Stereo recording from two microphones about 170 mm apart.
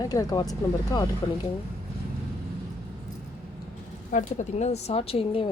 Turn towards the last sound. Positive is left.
turn(degrees=35)  # may be behind; listen again after turning